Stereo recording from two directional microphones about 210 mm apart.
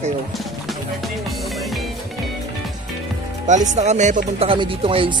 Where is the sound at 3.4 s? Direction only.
35° right (ahead or behind).